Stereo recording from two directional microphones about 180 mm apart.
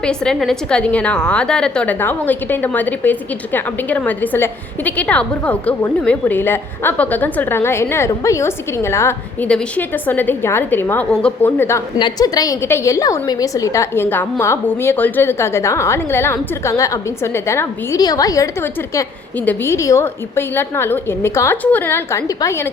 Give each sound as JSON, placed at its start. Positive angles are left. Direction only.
{"t": 0.0, "sound": "a woman's voice", "side_deg": 5}
{"t": 11.9, "sound": "a woman's voice", "side_deg": 25}